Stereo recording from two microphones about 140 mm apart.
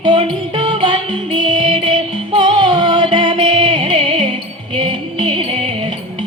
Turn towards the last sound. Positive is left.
turn(degrees=-35)  # may be behind; listen again after turning